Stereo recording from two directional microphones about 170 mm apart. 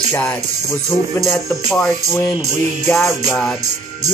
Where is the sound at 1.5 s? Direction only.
Centre (ahead or behind).